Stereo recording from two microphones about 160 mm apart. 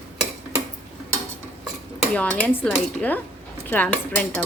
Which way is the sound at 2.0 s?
5° left (ahead or behind).